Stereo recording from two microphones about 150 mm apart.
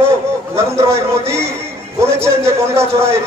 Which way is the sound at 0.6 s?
20° right (ahead or behind).